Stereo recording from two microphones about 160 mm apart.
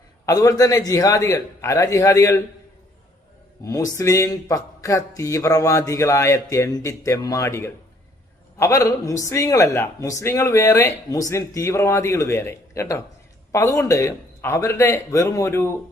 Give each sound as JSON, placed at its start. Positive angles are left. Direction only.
{"t": 0.3, "sound": "speech", "side_deg": 20}
{"t": 3.6, "sound": "speech", "side_deg": 20}